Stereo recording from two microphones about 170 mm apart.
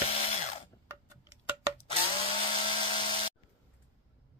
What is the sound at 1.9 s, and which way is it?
Tools, 30° left (ahead or behind).